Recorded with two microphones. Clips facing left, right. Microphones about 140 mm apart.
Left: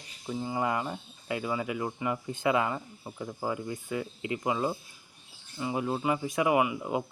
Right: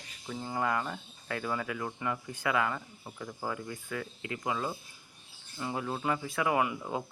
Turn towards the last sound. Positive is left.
turn(degrees=15)  # may be behind; listen again after turning